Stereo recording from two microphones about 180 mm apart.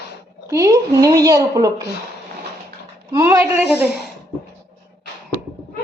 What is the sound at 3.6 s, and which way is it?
Speech, 5° right (ahead or behind).